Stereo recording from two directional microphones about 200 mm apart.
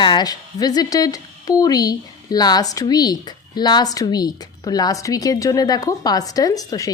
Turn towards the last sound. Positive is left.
turn(degrees=20)  # may be behind; listen again after turning